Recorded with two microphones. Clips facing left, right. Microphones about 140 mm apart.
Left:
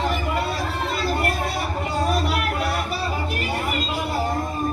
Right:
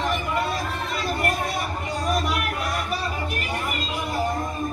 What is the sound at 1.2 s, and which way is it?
Music, 30° left (ahead or behind).